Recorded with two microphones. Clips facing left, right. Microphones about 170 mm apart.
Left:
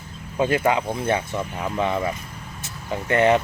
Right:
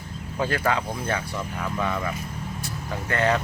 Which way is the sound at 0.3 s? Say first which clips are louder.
Left 4 dB; 20° left (ahead or behind).